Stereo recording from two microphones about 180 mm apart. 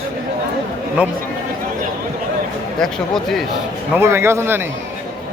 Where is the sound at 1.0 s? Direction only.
5° right (ahead or behind).